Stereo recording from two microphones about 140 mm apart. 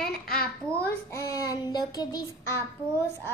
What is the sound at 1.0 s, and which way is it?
Child singing, 25° left (ahead or behind).